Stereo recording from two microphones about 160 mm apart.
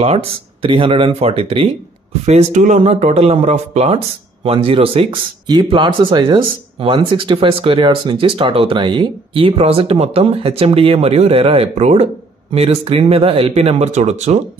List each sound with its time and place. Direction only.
0.0 s speech: 35° right (ahead or behind)
2.2 s speech: 45° right (ahead or behind)